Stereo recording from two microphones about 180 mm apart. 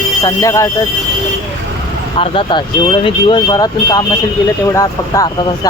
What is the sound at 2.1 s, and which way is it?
Speech, 30° left (ahead or behind).